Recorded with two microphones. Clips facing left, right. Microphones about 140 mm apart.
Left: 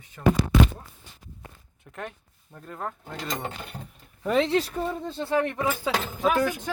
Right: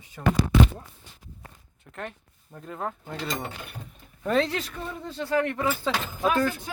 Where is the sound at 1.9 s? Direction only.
10° left (ahead or behind).